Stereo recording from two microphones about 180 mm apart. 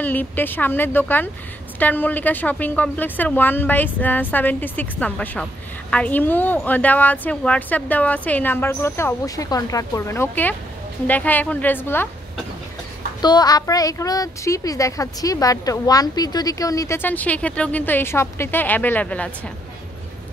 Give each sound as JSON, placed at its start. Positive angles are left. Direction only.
{"t": 0.0, "sound": "a woman's voice", "side_deg": 10}
{"t": 13.2, "sound": "a woman's voice", "side_deg": 20}